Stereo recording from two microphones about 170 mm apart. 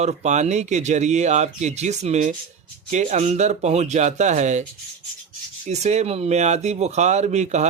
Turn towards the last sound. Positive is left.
turn(degrees=-40)  # may be behind; listen again after turning